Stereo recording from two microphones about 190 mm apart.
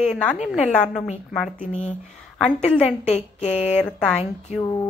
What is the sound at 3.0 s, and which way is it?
Speech, 35° left (ahead or behind).